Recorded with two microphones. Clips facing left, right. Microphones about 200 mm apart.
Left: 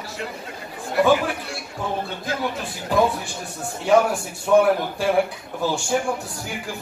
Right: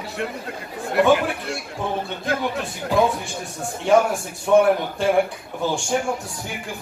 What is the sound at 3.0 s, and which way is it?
A man's voice, centre (ahead or behind).